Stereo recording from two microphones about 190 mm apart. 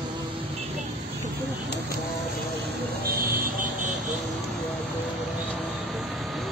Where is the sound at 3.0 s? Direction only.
45° right (ahead or behind).